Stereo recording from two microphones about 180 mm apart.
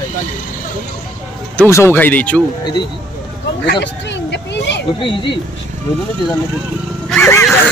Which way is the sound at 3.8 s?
75° left (ahead or behind).